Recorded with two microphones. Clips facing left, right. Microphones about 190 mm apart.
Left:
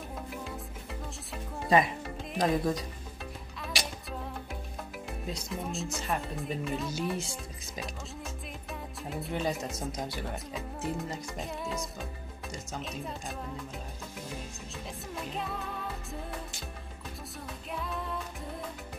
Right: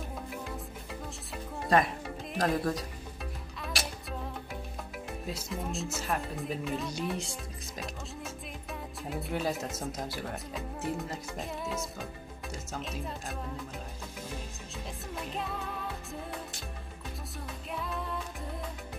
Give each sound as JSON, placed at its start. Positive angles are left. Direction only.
{"t": 1.3, "sound": "music", "side_deg": 0}
{"t": 5.2, "sound": "speech", "side_deg": -5}
{"t": 15.1, "sound": "music", "side_deg": 0}
{"t": 17.6, "sound": "music", "side_deg": 0}